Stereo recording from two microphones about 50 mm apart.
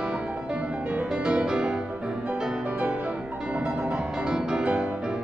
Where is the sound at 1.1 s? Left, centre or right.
Centre.